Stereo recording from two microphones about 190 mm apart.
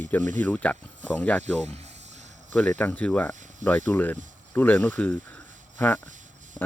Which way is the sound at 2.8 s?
10° left (ahead or behind).